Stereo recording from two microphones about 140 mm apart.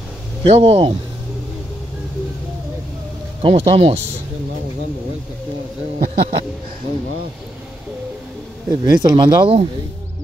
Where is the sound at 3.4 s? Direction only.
40° right (ahead or behind).